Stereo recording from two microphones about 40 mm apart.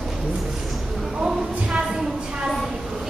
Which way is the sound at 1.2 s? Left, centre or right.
Centre.